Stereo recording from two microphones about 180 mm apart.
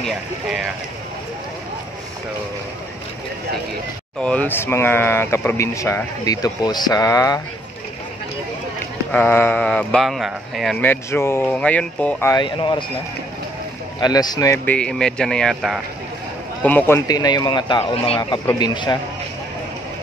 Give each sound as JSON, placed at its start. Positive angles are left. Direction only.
{"t": 0.0, "sound": "speech", "side_deg": 0}
{"t": 4.2, "sound": "speech", "side_deg": 5}
{"t": 9.1, "sound": "speech", "side_deg": 10}
{"t": 10.9, "sound": "speech", "side_deg": 15}
{"t": 12.4, "sound": "speech", "side_deg": 25}
{"t": 13.9, "sound": "speech", "side_deg": 20}
{"t": 14.8, "sound": "speech", "side_deg": 5}